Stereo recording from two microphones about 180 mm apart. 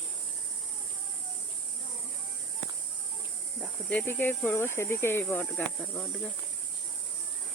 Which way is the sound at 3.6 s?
5° left (ahead or behind).